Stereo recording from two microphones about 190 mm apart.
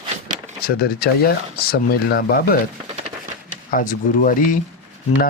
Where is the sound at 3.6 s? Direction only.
45° left (ahead or behind).